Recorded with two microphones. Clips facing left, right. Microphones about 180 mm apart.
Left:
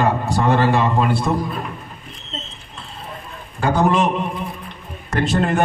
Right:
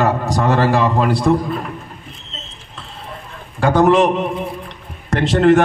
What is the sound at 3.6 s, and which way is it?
Speech, 90° right.